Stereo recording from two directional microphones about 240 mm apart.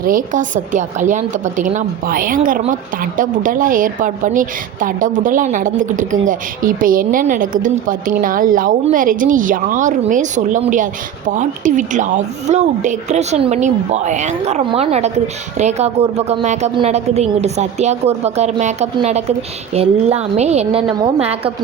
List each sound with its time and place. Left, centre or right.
0.0 s a woman's voice: right